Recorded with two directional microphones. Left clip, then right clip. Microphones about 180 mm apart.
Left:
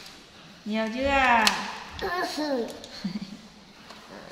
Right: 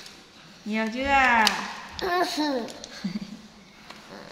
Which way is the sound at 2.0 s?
50° right (ahead or behind).